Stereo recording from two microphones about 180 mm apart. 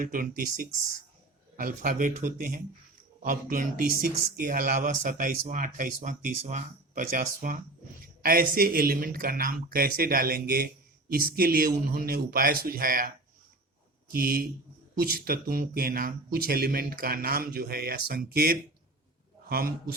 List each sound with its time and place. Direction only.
0.0 s speech: 50° right (ahead or behind)